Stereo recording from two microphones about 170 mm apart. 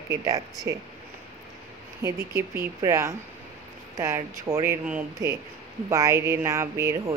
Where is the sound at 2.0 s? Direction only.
15° right (ahead or behind).